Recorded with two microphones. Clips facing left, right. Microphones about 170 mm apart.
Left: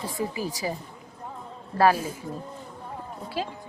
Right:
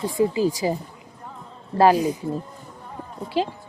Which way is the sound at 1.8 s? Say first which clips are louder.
Right 5 dB; 20° right (ahead or behind).